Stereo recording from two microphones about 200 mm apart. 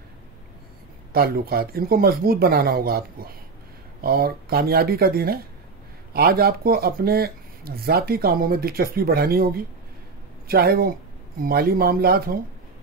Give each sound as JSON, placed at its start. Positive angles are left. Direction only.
{"t": 1.1, "sound": "speech", "side_deg": -50}